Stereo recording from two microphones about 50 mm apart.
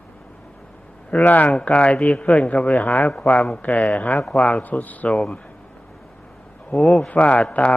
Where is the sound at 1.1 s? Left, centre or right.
Left.